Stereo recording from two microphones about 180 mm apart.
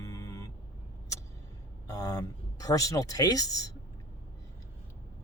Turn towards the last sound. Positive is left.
turn(degrees=20)  # may be behind; listen again after turning